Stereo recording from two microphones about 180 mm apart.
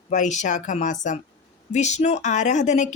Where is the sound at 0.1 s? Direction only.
40° left (ahead or behind).